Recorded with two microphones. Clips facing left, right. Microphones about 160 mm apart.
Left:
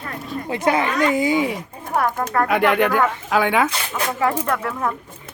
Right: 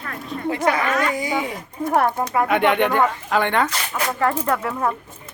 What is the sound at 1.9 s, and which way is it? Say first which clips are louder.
Speech: right 2 dB; 30° right (ahead or behind).